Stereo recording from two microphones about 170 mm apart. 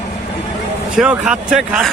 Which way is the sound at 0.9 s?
5° right (ahead or behind).